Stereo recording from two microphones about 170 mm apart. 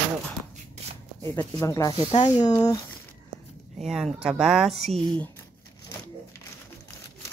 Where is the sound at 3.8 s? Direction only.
Centre (ahead or behind).